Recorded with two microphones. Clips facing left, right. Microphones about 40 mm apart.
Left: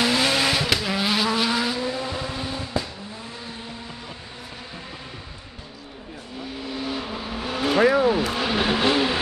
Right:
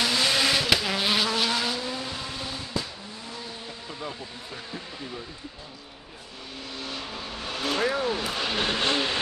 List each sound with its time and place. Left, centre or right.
0.0 s vehicle: left
0.7 s vehicle: centre
1.3 s vehicle: centre
6.6 s vehicle: centre